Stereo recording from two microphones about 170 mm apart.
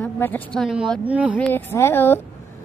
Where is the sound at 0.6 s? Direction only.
Centre (ahead or behind).